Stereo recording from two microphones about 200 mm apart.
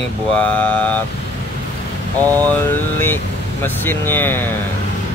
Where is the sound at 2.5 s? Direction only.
10° left (ahead or behind).